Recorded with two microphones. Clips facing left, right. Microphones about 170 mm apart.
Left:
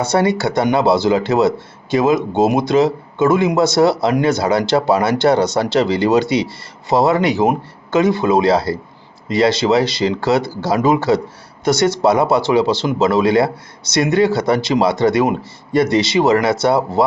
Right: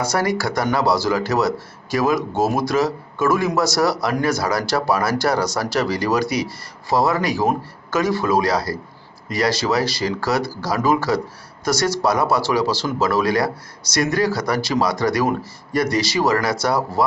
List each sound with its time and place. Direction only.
0.0 s speech: 25° left (ahead or behind)